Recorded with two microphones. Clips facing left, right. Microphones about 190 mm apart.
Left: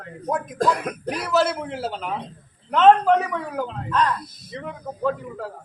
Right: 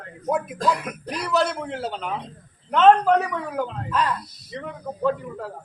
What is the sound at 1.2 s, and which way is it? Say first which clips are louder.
Speech: left 1 dB; centre (ahead or behind).